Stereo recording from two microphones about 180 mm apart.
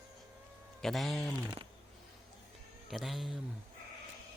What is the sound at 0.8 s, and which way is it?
Speech, centre (ahead or behind).